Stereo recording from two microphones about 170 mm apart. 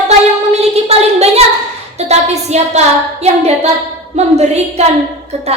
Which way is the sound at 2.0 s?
40° right (ahead or behind).